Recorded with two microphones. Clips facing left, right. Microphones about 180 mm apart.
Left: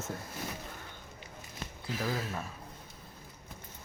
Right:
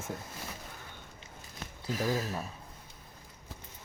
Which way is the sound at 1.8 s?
40° right (ahead or behind).